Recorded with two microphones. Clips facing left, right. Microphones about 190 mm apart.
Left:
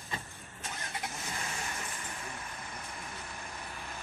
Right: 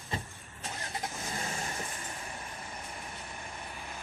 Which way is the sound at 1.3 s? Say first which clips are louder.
Right 3 dB; 30° right (ahead or behind).